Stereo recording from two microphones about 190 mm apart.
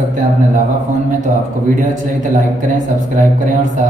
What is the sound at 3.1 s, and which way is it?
Speech, 40° right (ahead or behind).